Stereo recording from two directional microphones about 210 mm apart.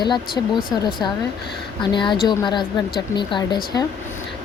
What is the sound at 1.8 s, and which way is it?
Speech, 20° left (ahead or behind).